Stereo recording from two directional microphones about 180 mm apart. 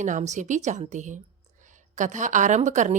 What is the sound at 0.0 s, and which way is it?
A woman's voice, 45° right (ahead or behind).